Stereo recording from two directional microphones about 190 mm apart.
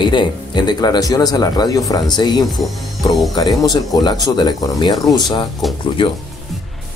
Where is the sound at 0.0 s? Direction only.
25° left (ahead or behind).